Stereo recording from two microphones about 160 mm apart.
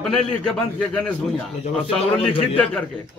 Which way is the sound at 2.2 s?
30° left (ahead or behind).